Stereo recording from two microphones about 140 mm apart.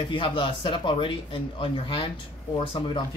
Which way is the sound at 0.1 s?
40° left (ahead or behind).